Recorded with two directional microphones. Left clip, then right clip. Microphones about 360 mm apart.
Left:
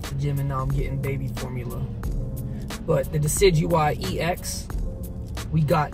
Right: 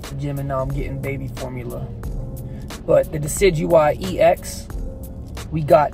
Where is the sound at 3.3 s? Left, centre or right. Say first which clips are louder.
Right 4 dB; centre.